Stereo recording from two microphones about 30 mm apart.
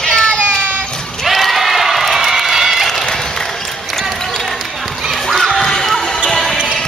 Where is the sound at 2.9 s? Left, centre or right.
Centre.